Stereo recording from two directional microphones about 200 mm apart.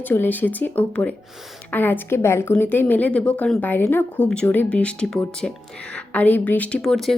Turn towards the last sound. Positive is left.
turn(degrees=0)  # may be behind; listen again after turning